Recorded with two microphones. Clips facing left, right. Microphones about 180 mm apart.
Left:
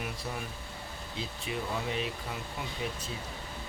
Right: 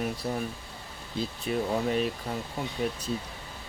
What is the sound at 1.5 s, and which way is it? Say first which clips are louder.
Speech: right 7 dB; 45° right (ahead or behind).